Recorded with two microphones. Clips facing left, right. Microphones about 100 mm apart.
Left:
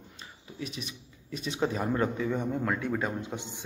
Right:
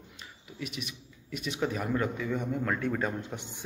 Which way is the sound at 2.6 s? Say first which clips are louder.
Even; 15° left (ahead or behind).